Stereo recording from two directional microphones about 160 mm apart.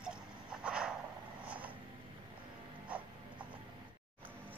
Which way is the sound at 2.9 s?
10° right (ahead or behind).